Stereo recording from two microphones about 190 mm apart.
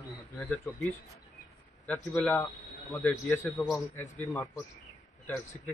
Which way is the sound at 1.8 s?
10° left (ahead or behind).